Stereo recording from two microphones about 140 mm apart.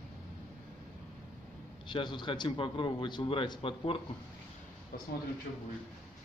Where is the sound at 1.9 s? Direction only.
35° left (ahead or behind).